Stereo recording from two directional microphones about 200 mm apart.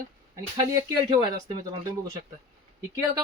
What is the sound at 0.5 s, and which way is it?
Speech, 15° right (ahead or behind).